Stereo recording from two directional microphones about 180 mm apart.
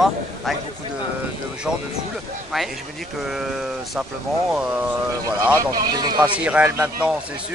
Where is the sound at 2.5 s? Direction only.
Centre (ahead or behind); by 6.2 s 20° right (ahead or behind).